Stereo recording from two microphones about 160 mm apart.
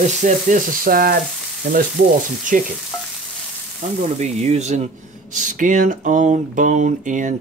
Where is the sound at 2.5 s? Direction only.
55° right (ahead or behind).